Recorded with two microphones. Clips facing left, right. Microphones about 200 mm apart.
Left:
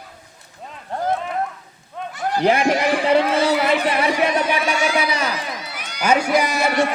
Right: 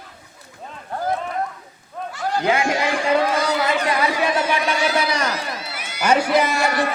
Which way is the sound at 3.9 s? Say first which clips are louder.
Left 1 dB; 20° left (ahead or behind).